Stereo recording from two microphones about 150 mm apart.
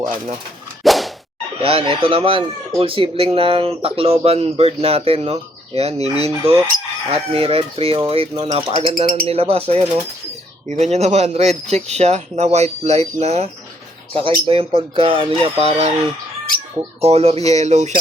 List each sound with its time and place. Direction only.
0.9 s whip: centre (ahead or behind)
1.6 s speech: 40° right (ahead or behind)
17.0 s speech: 45° right (ahead or behind)